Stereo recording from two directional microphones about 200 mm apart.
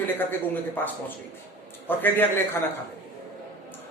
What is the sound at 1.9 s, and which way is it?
Speech, 10° left (ahead or behind).